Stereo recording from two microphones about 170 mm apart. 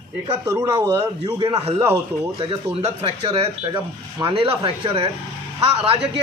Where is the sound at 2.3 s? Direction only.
35° right (ahead or behind).